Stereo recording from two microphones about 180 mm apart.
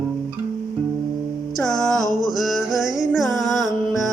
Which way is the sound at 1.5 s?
5° left (ahead or behind).